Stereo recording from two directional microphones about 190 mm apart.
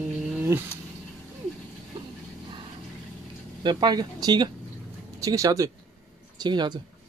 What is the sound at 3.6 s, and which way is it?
Speech, 25° right (ahead or behind).